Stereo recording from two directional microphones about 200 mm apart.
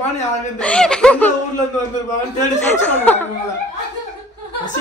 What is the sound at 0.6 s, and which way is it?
Speech, 5° left (ahead or behind).